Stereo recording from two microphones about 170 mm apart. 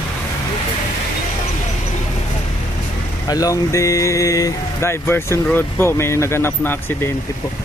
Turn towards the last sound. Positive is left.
turn(degrees=10)  # may be behind; listen again after turning